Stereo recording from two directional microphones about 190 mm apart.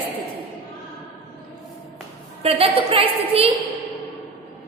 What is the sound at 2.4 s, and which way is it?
A woman's voice, 30° right (ahead or behind).